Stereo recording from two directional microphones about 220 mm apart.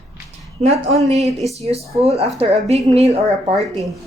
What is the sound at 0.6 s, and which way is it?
Speech, 30° right (ahead or behind).